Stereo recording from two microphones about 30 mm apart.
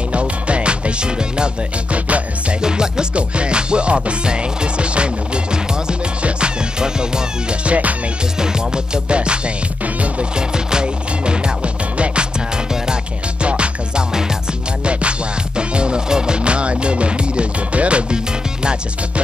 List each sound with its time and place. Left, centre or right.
0.1 s music: right
1.9 s music: right
2.6 s music: right
3.2 s music: right
7.6 s music: right
8.4 s music: right
9.9 s music: right
10.3 s music: right
12.4 s music: right
13.4 s music: right